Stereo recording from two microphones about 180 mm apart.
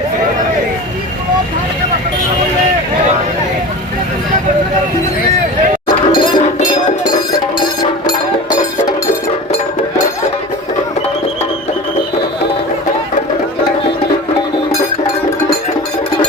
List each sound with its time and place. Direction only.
6.1 s chink: 25° left (ahead or behind)
7.3 s a sound: 20° left (ahead or behind)
8.0 s music: 45° left (ahead or behind)